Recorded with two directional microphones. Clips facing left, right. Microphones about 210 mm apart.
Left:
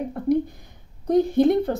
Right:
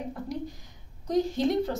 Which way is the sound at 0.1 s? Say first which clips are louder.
Left 12 dB; 55° left (ahead or behind).